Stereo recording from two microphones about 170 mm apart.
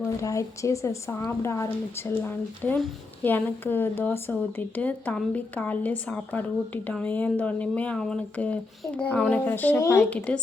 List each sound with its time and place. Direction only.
0.0 s speech: 20° left (ahead or behind)
10.2 s speech: 5° left (ahead or behind)